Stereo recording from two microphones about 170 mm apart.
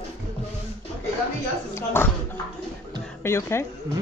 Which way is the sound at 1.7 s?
15° left (ahead or behind).